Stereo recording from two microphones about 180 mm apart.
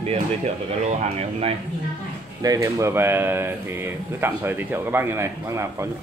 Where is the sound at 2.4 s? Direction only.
15° right (ahead or behind).